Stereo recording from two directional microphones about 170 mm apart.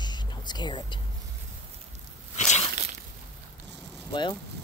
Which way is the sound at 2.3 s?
45° left (ahead or behind).